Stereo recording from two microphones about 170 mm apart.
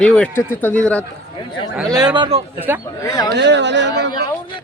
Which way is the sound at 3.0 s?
20° left (ahead or behind).